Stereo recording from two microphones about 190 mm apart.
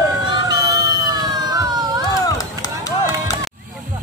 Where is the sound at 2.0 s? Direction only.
20° left (ahead or behind).